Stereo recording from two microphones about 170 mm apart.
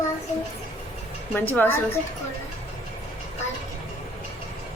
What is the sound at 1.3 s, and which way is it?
Speech, 10° left (ahead or behind).